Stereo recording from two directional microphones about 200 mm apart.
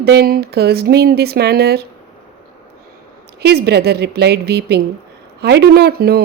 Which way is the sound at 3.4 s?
55° right (ahead or behind).